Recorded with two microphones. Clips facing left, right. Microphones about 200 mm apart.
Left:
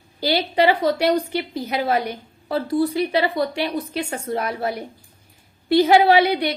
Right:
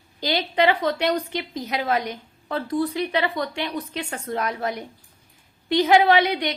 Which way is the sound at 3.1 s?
35° left (ahead or behind).